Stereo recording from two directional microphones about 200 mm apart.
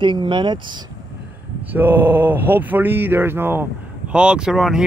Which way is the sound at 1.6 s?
10° right (ahead or behind).